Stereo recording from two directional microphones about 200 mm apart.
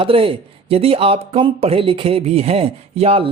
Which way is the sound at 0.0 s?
25° right (ahead or behind).